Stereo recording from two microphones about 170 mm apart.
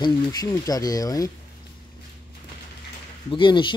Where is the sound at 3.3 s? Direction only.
30° left (ahead or behind).